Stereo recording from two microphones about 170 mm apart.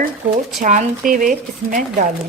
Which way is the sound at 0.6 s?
50° right (ahead or behind).